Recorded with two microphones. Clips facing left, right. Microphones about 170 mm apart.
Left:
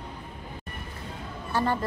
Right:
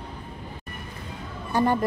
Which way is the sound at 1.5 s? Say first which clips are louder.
Right 4 dB; 15° right (ahead or behind).